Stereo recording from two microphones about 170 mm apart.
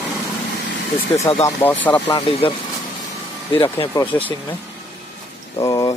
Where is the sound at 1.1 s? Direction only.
15° left (ahead or behind).